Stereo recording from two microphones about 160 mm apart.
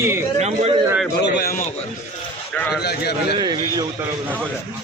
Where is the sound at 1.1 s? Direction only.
85° left.